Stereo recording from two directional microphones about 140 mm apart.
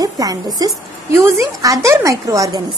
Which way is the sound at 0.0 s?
25° right (ahead or behind).